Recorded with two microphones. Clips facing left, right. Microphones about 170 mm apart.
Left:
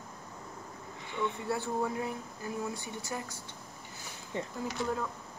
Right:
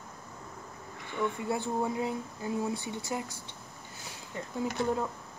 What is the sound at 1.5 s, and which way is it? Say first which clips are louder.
Speech: right 2 dB; 20° right (ahead or behind).